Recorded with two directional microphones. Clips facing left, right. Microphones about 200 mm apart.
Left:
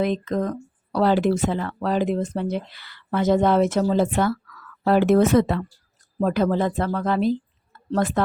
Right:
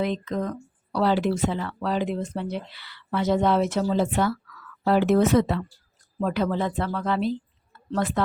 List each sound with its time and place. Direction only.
0.0 s a woman's voice: 45° left (ahead or behind)